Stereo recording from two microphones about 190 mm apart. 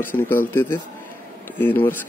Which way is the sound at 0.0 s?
10° left (ahead or behind).